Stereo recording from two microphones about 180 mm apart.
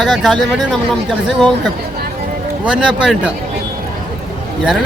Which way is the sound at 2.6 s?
5° right (ahead or behind).